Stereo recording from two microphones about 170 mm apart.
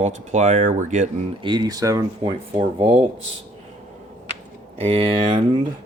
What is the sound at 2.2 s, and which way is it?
Speech, 30° right (ahead or behind).